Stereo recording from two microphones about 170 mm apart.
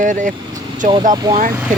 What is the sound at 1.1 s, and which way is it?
Speech, 25° right (ahead or behind).